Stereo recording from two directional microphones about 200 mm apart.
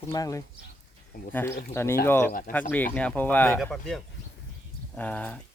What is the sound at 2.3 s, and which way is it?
Speech, 45° left (ahead or behind).